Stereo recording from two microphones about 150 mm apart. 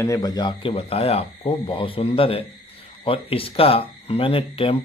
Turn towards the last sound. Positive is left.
turn(degrees=40)  # may be behind; listen again after turning